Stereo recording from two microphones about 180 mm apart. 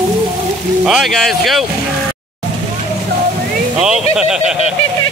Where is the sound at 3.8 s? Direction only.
5° right (ahead or behind).